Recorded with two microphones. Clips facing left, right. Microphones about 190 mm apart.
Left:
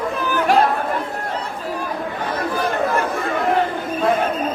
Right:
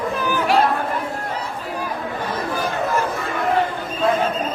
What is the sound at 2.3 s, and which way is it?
Chatter, 60° left (ahead or behind).